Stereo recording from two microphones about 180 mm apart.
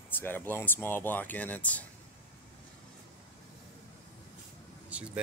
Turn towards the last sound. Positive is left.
turn(degrees=-10)  # may be behind; listen again after turning